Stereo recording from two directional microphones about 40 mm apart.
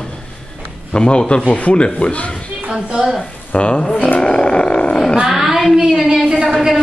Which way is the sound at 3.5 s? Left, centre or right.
Left.